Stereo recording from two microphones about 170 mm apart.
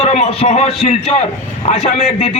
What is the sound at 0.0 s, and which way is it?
A man's voice, 40° left (ahead or behind).